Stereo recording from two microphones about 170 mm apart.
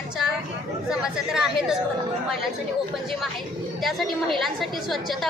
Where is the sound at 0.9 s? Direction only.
5° right (ahead or behind).